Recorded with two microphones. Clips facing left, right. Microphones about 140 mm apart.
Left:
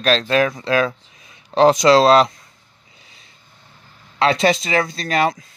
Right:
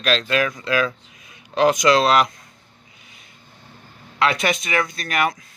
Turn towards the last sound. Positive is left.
turn(degrees=30)  # may be behind; listen again after turning